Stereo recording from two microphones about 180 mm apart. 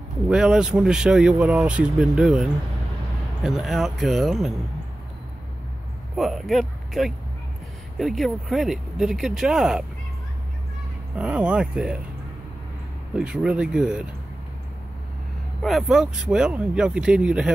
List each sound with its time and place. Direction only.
0.3 s speech: 5° right (ahead or behind)
6.1 s speech: centre (ahead or behind)
11.1 s speech: 5° right (ahead or behind)
13.1 s speech: 5° right (ahead or behind)
15.6 s speech: centre (ahead or behind)